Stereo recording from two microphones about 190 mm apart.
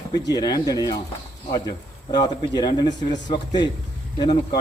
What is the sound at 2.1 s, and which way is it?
A man's voice, 20° left (ahead or behind).